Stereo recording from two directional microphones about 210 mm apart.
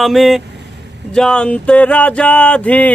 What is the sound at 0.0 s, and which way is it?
Speech, centre (ahead or behind).